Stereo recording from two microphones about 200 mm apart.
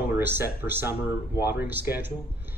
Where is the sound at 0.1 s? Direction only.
10° right (ahead or behind).